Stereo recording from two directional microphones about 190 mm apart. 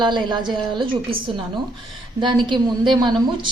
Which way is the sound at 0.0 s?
25° right (ahead or behind).